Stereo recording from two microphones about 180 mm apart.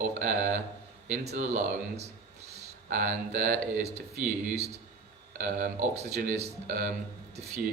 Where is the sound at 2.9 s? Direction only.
45° right (ahead or behind).